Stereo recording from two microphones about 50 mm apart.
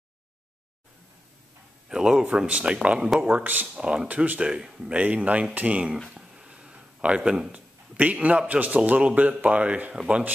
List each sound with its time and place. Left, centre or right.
1.9 s speech: centre
5.0 s speech: right
6.0 s a sound: centre
7.5 s speech: right